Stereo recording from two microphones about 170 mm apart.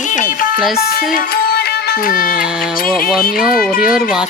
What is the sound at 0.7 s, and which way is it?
Music, 60° left (ahead or behind).